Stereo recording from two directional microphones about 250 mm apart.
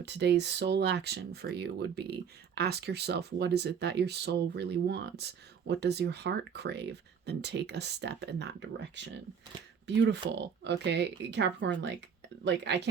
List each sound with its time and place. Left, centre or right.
0.0 s speech: right